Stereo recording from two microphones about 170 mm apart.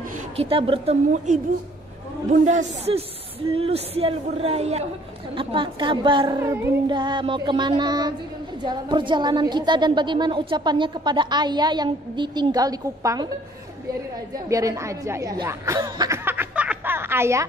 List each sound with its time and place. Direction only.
0.0 s a sound: 45° right (ahead or behind)
0.5 s a man's voice: 35° right (ahead or behind)
14.5 s speech: 20° right (ahead or behind)